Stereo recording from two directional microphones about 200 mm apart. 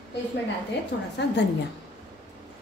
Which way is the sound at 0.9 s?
60° left (ahead or behind).